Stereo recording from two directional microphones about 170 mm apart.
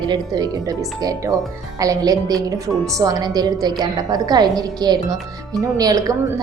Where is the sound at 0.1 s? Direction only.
20° right (ahead or behind).